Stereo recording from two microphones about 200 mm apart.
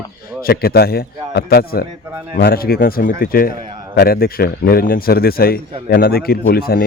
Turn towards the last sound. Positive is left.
turn(degrees=50)  # may be behind; listen again after turning